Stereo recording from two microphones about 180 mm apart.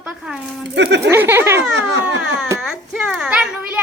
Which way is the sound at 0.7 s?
70° right (ahead or behind).